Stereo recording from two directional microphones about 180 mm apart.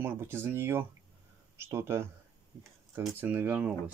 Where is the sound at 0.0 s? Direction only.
10° right (ahead or behind).